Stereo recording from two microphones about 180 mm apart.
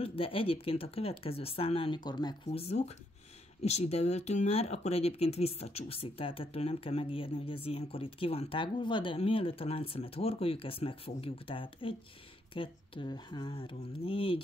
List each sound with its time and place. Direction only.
0.0 s speech: 30° left (ahead or behind)